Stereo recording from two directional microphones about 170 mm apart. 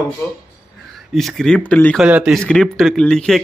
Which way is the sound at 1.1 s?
Centre (ahead or behind).